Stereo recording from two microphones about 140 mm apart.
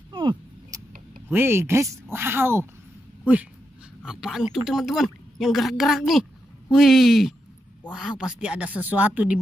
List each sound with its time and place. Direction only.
0.1 s a sound: 35° right (ahead or behind)
1.3 s speech: 15° right (ahead or behind)
4.0 s a woman's voice: 5° right (ahead or behind)